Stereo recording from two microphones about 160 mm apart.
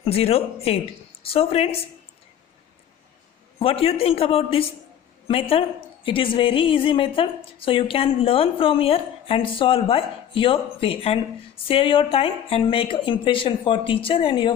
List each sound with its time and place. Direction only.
0.0 s a woman's voice: 40° left (ahead or behind)
3.6 s a woman's voice: 35° left (ahead or behind)